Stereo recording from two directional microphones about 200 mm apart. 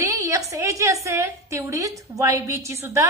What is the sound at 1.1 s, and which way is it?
A woman's voice, 15° right (ahead or behind).